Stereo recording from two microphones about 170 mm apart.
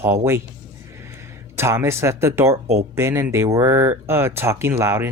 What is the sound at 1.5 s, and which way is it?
Speech, 15° right (ahead or behind).